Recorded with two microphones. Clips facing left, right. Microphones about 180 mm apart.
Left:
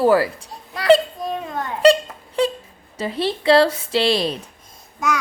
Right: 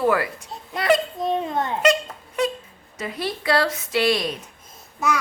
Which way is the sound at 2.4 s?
30° left (ahead or behind).